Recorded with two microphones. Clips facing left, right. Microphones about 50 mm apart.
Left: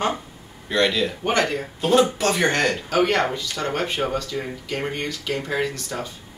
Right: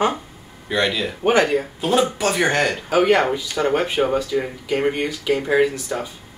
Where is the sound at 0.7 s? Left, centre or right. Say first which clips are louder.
Even; centre.